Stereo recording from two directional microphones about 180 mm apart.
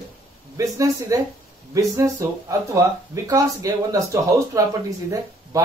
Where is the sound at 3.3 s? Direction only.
20° right (ahead or behind).